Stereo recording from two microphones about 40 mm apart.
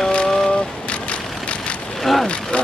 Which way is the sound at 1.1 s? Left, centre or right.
Left.